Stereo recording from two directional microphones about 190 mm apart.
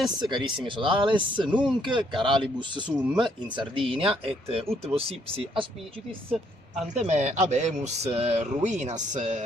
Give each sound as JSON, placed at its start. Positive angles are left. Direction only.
{"t": 0.2, "sound": "speech", "side_deg": -25}
{"t": 6.9, "sound": "speech", "side_deg": -40}